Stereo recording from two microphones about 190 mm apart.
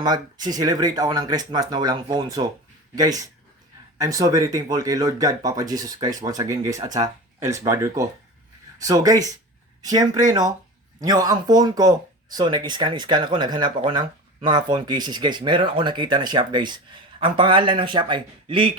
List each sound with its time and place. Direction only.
0.0 s speech: 20° right (ahead or behind)